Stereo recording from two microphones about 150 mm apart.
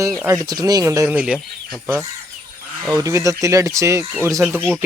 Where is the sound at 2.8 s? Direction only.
25° right (ahead or behind).